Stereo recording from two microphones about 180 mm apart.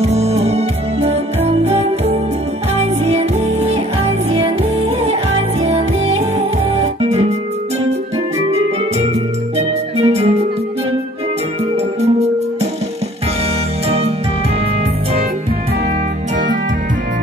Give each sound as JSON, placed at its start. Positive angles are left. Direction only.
{"t": 0.0, "sound": "music", "side_deg": -35}
{"t": 8.5, "sound": "music", "side_deg": -35}
{"t": 13.8, "sound": "music", "side_deg": -35}